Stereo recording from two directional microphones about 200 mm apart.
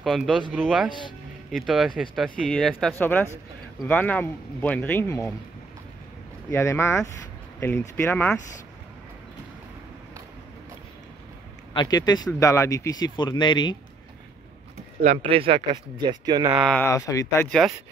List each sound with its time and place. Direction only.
0.0 s speech: centre (ahead or behind)
6.5 s speech: 15° left (ahead or behind)
11.7 s speech: 20° left (ahead or behind)
15.0 s speech: 30° right (ahead or behind)
16.5 s speech: centre (ahead or behind)
16.8 s speech: 15° left (ahead or behind)
17.5 s speech: centre (ahead or behind)